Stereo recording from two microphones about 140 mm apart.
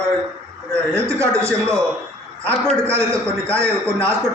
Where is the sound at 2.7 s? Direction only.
20° right (ahead or behind).